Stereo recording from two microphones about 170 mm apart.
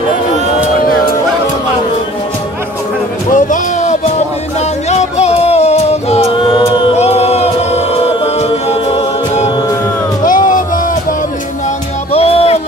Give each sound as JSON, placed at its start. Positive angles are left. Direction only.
{"t": 0.7, "sound": "a sound", "side_deg": 55}
{"t": 3.3, "sound": "a sound", "side_deg": 45}
{"t": 4.6, "sound": "music", "side_deg": 40}
{"t": 6.5, "sound": "choir", "side_deg": 35}
{"t": 10.2, "sound": "music", "side_deg": 50}
{"t": 12.1, "sound": "music", "side_deg": 35}